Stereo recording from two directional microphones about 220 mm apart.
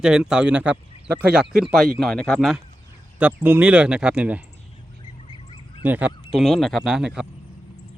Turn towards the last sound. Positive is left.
turn(degrees=-5)  # may be behind; listen again after turning